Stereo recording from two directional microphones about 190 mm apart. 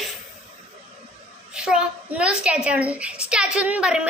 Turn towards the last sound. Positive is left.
turn(degrees=-5)  # may be behind; listen again after turning